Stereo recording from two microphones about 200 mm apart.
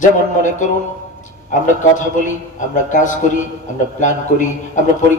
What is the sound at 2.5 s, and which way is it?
Speech, 40° left (ahead or behind).